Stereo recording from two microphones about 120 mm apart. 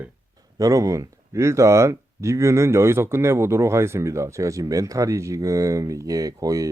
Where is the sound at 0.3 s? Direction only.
30° right (ahead or behind).